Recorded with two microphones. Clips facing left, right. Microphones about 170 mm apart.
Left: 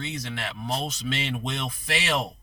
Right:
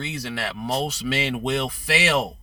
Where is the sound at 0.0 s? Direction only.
65° right (ahead or behind).